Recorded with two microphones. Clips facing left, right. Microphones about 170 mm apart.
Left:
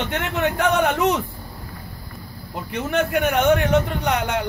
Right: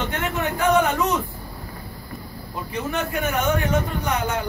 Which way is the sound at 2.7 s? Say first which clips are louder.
Left 5 dB; 70° left (ahead or behind).